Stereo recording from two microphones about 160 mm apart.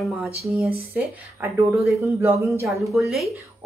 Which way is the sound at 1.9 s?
15° right (ahead or behind).